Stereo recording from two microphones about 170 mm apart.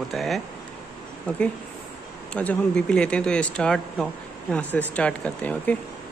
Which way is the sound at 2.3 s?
5° left (ahead or behind).